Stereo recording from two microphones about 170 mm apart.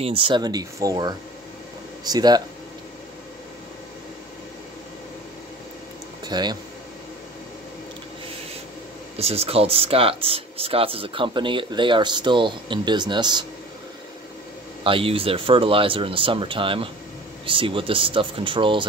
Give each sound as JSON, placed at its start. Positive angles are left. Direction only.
{"t": 0.0, "sound": "speech", "side_deg": -30}
{"t": 6.2, "sound": "speech", "side_deg": -25}
{"t": 9.1, "sound": "speech", "side_deg": -35}
{"t": 14.8, "sound": "speech", "side_deg": -30}